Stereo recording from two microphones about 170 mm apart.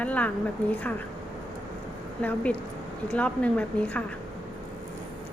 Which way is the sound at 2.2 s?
10° left (ahead or behind).